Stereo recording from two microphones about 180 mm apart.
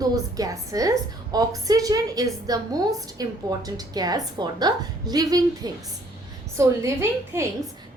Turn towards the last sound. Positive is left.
turn(degrees=-15)  # may be behind; listen again after turning